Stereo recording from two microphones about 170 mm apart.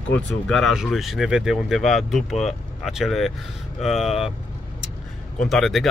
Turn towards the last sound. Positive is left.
turn(degrees=0)  # may be behind; listen again after turning